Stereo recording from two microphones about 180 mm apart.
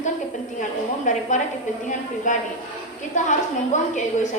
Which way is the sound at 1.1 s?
40° left (ahead or behind).